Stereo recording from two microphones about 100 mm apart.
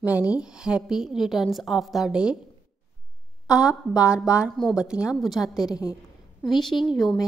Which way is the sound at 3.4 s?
10° right (ahead or behind).